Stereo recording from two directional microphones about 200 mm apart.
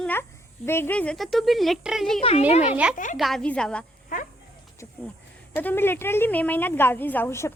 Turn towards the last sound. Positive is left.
turn(degrees=15)  # may be behind; listen again after turning